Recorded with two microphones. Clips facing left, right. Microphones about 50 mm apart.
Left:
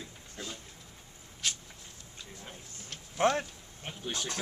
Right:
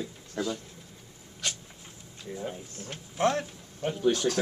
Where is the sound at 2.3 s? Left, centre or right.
Centre.